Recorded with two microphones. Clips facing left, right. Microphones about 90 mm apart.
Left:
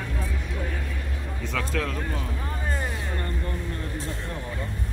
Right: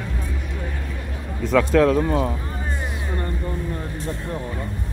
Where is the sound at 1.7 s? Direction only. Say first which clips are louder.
Right 13 dB; 40° right (ahead or behind).